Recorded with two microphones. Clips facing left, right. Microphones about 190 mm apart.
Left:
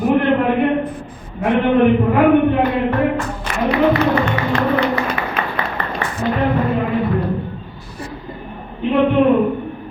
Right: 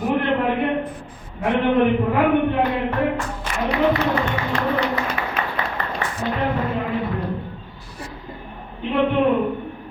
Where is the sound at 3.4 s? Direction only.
65° left (ahead or behind).